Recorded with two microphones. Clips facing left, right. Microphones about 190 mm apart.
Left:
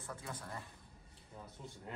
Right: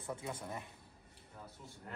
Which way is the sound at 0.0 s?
25° right (ahead or behind).